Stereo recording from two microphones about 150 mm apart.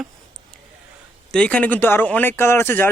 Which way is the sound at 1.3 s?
5° left (ahead or behind).